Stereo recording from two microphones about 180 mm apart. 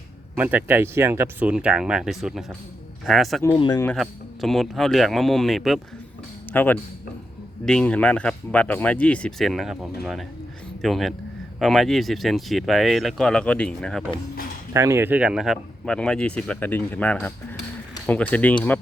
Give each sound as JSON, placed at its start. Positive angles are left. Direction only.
{"t": 0.3, "sound": "speech", "side_deg": -10}
{"t": 3.5, "sound": "speech", "side_deg": 25}
{"t": 3.9, "sound": "speech", "side_deg": 0}
{"t": 14.7, "sound": "speech", "side_deg": -15}